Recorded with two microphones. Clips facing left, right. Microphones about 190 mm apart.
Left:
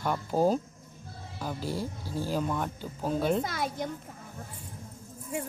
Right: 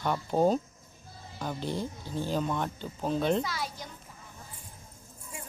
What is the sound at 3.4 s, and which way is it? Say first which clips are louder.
Speech: left 4 dB; 50° left (ahead or behind).